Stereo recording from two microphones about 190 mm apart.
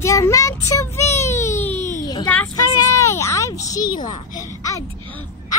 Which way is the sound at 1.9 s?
20° left (ahead or behind).